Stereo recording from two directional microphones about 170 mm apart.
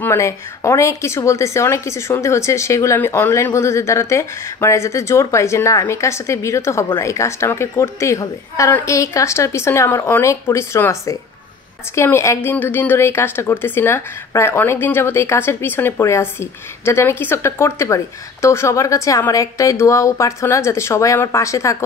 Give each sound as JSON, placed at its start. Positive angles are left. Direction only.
{"t": 0.0, "sound": "a woman's voice", "side_deg": 15}